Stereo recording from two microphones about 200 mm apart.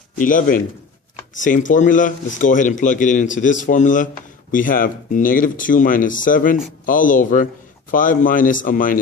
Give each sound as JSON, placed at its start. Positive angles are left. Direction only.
{"t": 0.2, "sound": "speech", "side_deg": 40}